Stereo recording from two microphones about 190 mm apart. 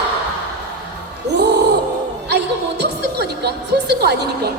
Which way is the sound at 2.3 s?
60° right (ahead or behind).